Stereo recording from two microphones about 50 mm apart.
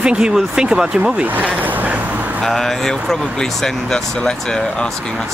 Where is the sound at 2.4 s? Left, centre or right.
Centre.